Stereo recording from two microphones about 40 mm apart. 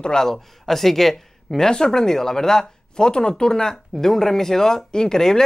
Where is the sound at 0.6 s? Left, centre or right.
Centre.